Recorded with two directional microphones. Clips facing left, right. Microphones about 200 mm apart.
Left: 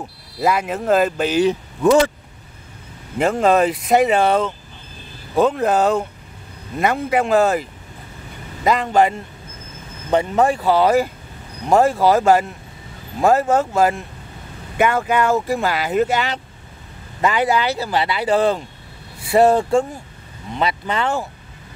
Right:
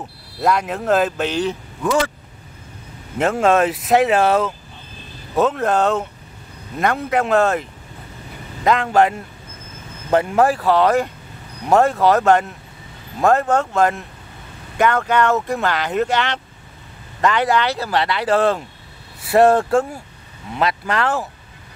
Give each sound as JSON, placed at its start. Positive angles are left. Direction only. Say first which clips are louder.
{"t": 0.4, "sound": "speech", "louder": "even", "side_deg": 5}
{"t": 1.5, "sound": "speech", "louder": "left 6 dB", "side_deg": 25}
{"t": 3.2, "sound": "speech", "louder": "even", "side_deg": 0}
{"t": 8.6, "sound": "speech", "louder": "even", "side_deg": 0}